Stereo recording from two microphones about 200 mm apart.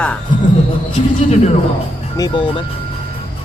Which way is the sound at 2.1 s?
20° left (ahead or behind).